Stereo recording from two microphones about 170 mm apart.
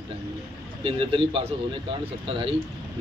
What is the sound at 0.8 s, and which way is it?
A man's voice, 30° right (ahead or behind).